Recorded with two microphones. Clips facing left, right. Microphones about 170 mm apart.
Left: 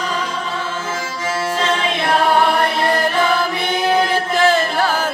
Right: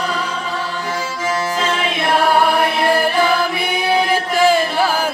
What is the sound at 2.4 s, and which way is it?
Music, 10° right (ahead or behind).